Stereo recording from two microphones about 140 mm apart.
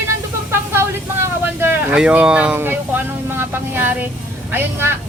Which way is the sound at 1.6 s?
10° right (ahead or behind).